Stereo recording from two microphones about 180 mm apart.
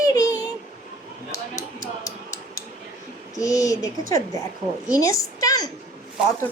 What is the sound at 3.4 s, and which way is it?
A woman's voice, 20° left (ahead or behind).